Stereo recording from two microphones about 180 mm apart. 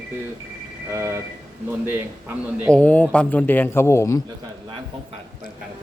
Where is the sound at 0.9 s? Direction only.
15° right (ahead or behind).